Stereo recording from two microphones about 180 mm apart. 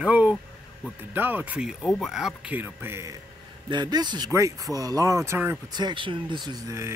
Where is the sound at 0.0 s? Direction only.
5° right (ahead or behind).